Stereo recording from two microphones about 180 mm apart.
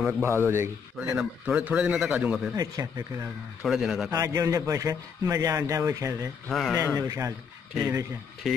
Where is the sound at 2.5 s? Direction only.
20° right (ahead or behind).